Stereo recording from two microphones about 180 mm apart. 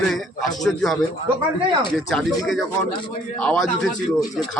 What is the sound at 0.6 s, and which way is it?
Speech, centre (ahead or behind).